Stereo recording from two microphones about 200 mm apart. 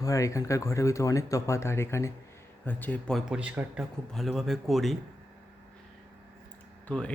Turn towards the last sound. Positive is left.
turn(degrees=5)  # may be behind; listen again after turning